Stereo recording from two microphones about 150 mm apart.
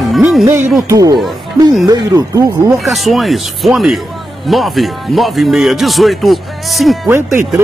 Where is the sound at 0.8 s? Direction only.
25° right (ahead or behind).